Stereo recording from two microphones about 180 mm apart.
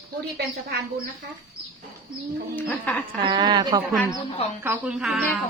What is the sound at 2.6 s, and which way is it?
Speech, 10° left (ahead or behind).